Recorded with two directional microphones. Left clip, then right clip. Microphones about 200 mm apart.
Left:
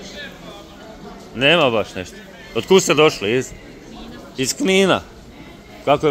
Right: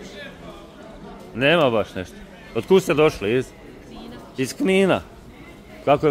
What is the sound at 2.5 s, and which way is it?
Speech, 5° right (ahead or behind).